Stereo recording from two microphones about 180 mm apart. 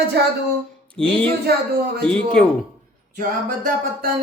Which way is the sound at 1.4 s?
60° right (ahead or behind).